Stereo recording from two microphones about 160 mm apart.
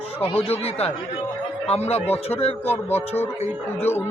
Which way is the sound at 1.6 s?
40° left (ahead or behind).